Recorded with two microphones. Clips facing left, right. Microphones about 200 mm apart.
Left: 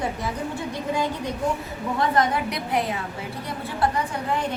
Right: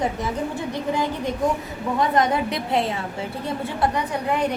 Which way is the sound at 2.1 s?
20° right (ahead or behind).